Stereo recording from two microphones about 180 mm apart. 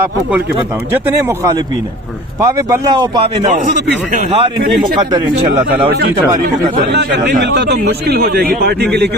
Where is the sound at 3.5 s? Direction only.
45° right (ahead or behind).